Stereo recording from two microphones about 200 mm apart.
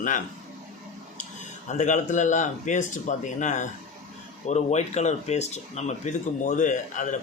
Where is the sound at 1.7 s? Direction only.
35° left (ahead or behind).